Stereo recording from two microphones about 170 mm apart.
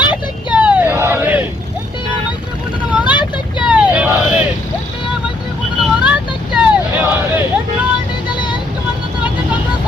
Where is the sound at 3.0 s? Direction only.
25° left (ahead or behind).